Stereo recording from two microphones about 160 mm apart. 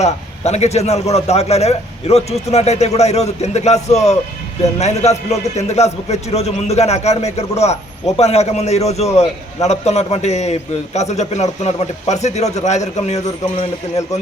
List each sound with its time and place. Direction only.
0.0 s a man's voice: 45° left (ahead or behind)